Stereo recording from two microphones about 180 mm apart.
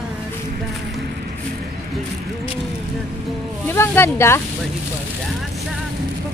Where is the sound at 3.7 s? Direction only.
15° left (ahead or behind).